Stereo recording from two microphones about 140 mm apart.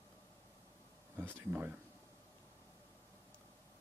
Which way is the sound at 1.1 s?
15° right (ahead or behind).